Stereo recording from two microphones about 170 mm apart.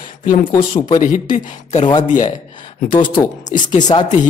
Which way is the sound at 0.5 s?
30° left (ahead or behind).